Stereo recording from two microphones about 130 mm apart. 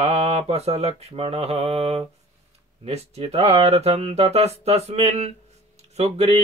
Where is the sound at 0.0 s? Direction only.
55° right (ahead or behind).